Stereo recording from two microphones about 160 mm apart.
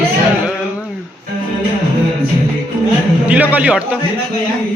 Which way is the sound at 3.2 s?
10° right (ahead or behind).